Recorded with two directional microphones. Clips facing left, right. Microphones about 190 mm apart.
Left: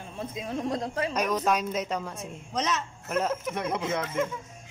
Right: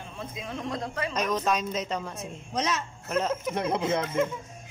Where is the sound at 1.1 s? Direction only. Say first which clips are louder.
Even; 10° left (ahead or behind).